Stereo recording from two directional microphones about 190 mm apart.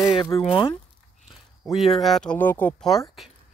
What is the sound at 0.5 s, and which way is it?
Speech, 25° left (ahead or behind).